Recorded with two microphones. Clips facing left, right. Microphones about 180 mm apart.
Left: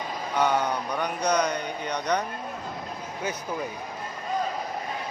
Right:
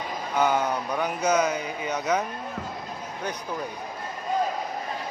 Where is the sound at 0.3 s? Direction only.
5° right (ahead or behind).